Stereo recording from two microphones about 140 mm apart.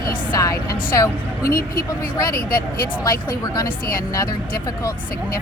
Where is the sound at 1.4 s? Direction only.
90° left.